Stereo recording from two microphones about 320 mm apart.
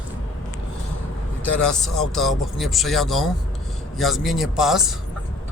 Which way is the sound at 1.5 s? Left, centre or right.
Centre.